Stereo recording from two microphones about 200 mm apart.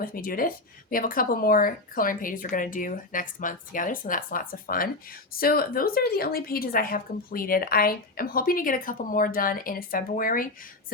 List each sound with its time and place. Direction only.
0.0 s a woman's voice: 45° left (ahead or behind)